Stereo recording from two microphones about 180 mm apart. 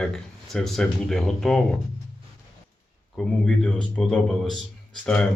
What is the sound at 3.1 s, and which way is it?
Speech, 5° left (ahead or behind).